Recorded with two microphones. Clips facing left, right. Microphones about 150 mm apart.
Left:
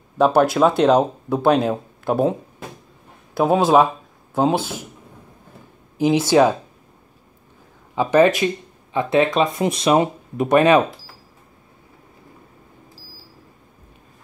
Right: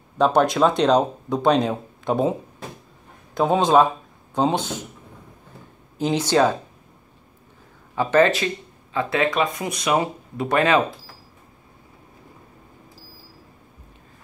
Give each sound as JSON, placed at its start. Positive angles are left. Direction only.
{"t": 0.2, "sound": "speech", "side_deg": 5}
{"t": 3.3, "sound": "speech", "side_deg": 5}
{"t": 5.9, "sound": "speech", "side_deg": 10}
{"t": 7.9, "sound": "speech", "side_deg": 15}